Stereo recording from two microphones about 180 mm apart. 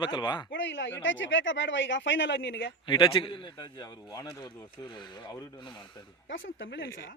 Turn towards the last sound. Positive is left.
turn(degrees=90)